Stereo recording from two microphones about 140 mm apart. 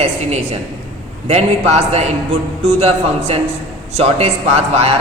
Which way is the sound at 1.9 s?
50° right (ahead or behind).